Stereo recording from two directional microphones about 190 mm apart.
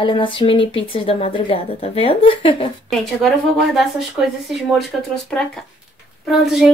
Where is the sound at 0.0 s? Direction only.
25° left (ahead or behind).